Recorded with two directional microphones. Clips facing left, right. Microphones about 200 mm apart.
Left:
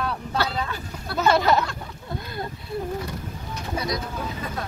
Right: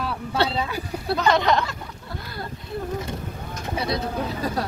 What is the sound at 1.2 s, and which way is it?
Speech, 5° left (ahead or behind).